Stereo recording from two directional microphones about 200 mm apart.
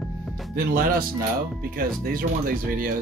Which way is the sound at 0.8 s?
45° right (ahead or behind).